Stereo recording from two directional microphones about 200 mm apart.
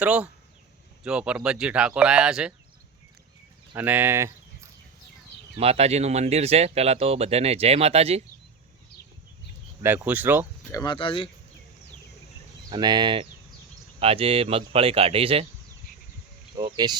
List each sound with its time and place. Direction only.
0.0 s speech: 5° right (ahead or behind)
3.8 s speech: 10° right (ahead or behind)
5.5 s speech: 30° right (ahead or behind)
9.8 s speech: 10° right (ahead or behind)
10.7 s speech: 20° left (ahead or behind)
12.7 s speech: 20° right (ahead or behind)
16.6 s speech: 15° right (ahead or behind)